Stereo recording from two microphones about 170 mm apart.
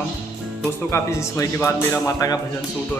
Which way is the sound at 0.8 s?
15° left (ahead or behind).